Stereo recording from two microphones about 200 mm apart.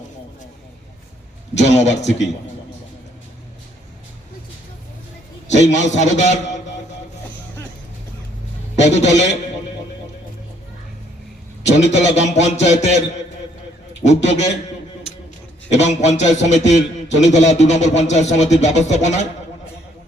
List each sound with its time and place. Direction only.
1.5 s a man's voice: 35° left (ahead or behind)
5.5 s a man's voice: 35° left (ahead or behind)
8.8 s a man's voice: 35° left (ahead or behind)
11.8 s a man's voice: 35° left (ahead or behind)
14.0 s a man's voice: 35° left (ahead or behind)
15.7 s a man's voice: 35° left (ahead or behind)